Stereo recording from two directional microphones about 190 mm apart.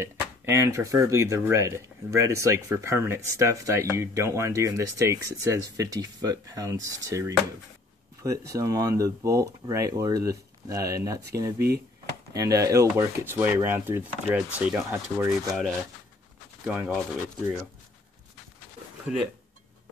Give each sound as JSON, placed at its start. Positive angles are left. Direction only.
{"t": 0.0, "sound": "speech", "side_deg": -15}
{"t": 16.6, "sound": "speech", "side_deg": -5}
{"t": 19.1, "sound": "speech", "side_deg": -5}